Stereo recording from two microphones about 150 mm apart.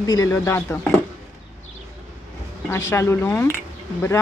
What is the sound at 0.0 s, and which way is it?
Speech, 25° left (ahead or behind).